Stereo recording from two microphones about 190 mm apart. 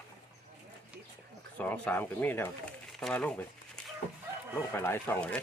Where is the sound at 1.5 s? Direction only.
5° left (ahead or behind).